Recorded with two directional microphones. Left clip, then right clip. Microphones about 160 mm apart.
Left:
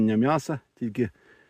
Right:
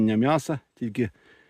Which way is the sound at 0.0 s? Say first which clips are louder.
Right 1 dB; 25° right (ahead or behind).